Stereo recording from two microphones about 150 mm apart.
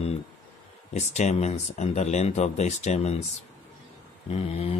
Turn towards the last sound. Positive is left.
turn(degrees=45)  # may be behind; listen again after turning